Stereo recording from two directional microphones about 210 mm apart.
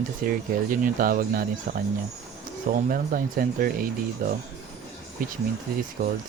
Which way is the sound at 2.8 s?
40° right (ahead or behind).